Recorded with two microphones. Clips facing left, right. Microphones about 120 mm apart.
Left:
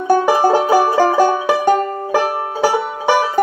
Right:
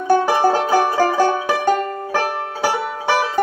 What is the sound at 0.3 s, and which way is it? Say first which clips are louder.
Music: left 3 dB; 15° left (ahead or behind).